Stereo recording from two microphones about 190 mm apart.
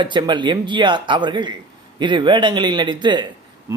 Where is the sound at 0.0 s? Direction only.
25° right (ahead or behind).